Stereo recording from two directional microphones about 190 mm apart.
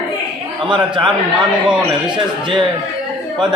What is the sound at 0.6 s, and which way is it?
Speech, 25° right (ahead or behind).